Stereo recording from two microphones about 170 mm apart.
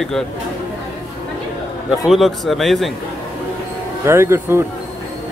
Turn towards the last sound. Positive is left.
turn(degrees=-15)  # may be behind; listen again after turning